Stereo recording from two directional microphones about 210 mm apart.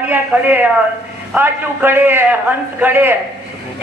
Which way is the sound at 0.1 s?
10° right (ahead or behind).